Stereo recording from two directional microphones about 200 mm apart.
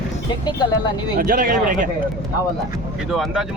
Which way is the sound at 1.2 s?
45° right (ahead or behind).